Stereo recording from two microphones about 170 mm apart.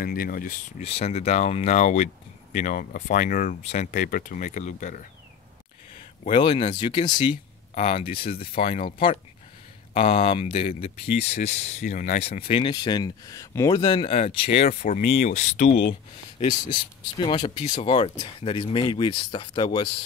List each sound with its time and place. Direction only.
0.0 s speech: 60° left (ahead or behind)
0.8 s speech: 35° left (ahead or behind)
6.3 s speech: 30° left (ahead or behind)
7.7 s speech: 40° left (ahead or behind)
14.1 s speech: 35° left (ahead or behind)
14.7 s speech: 55° left (ahead or behind); by 19.9 s 25° left (ahead or behind)